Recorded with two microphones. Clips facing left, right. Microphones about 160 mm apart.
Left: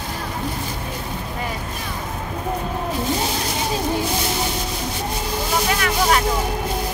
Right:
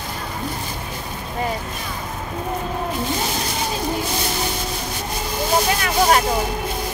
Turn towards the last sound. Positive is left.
turn(degrees=-35)  # may be behind; listen again after turning